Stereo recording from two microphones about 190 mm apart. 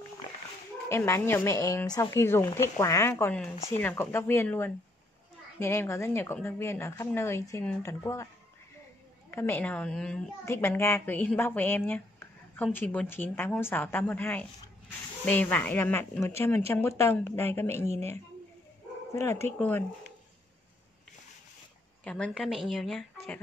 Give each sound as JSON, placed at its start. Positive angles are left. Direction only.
{"t": 0.8, "sound": "speech", "side_deg": 15}
{"t": 9.3, "sound": "speech", "side_deg": 10}
{"t": 17.8, "sound": "speech", "side_deg": -35}
{"t": 19.4, "sound": "speech", "side_deg": 10}
{"t": 22.0, "sound": "speech", "side_deg": 5}